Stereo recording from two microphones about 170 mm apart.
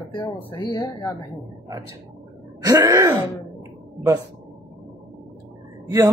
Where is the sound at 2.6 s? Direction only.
20° right (ahead or behind).